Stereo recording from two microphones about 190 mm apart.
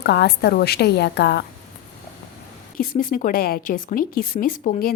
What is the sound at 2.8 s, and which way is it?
Speech, 45° left (ahead or behind).